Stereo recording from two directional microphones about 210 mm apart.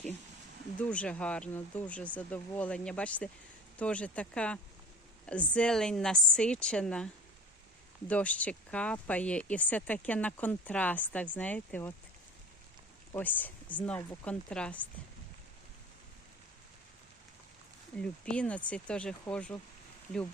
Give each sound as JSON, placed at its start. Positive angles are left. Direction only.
{"t": 0.8, "sound": "a woman's voice", "side_deg": 5}
{"t": 13.1, "sound": "speech", "side_deg": 10}
{"t": 17.9, "sound": "a woman's voice", "side_deg": 5}